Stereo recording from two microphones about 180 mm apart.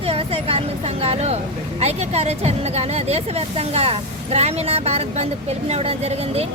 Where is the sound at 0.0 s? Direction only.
35° right (ahead or behind).